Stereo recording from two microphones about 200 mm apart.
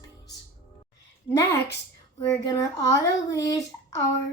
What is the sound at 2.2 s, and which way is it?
A child's voice, 15° left (ahead or behind).